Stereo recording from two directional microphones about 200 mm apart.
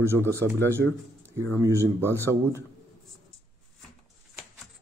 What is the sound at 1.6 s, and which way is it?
Speech, 15° right (ahead or behind).